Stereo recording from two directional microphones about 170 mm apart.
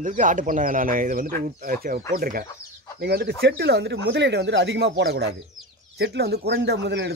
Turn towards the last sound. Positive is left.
turn(degrees=-90)